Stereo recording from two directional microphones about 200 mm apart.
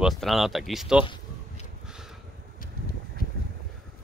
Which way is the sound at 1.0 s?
25° left (ahead or behind).